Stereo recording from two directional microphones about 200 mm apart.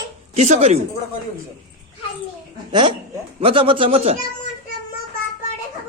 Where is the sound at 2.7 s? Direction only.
25° right (ahead or behind).